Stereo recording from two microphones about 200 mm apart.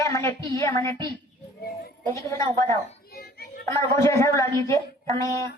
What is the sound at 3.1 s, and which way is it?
Children playing, 50° left (ahead or behind).